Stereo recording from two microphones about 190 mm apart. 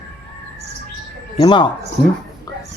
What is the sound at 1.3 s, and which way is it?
Speech, 25° left (ahead or behind).